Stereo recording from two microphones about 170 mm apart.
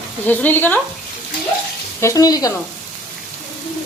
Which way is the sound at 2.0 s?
20° left (ahead or behind).